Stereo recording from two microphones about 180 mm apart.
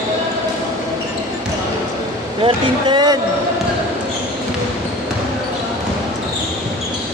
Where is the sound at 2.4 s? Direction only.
25° right (ahead or behind).